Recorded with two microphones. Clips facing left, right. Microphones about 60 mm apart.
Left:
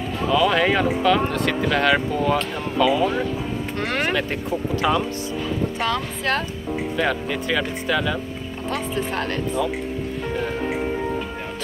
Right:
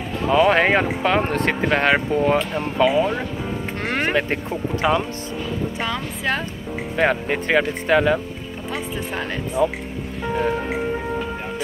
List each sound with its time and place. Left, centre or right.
0.3 s speech: right
5.8 s speech: centre
7.0 s speech: right
9.6 s speech: right